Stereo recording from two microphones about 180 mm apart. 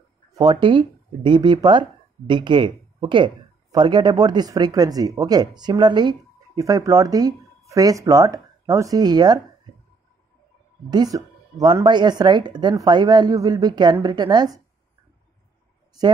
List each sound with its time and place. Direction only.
0.4 s speech: 25° right (ahead or behind)
10.9 s speech: 20° right (ahead or behind)